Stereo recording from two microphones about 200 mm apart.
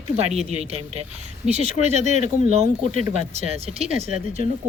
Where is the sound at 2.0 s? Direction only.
40° left (ahead or behind).